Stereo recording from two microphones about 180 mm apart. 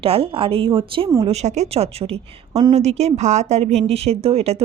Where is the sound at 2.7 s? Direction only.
35° right (ahead or behind).